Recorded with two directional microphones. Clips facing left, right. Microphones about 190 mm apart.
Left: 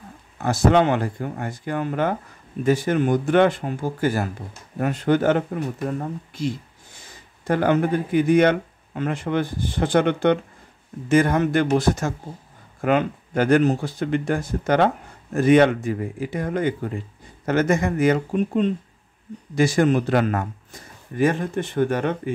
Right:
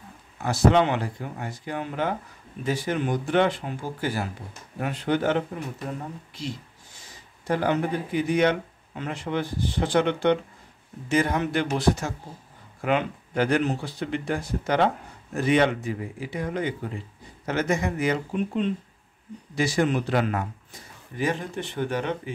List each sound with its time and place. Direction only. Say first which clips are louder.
0.4 s speech: left 2 dB; 50° left (ahead or behind)
7.4 s speech: left 5 dB; 55° left (ahead or behind)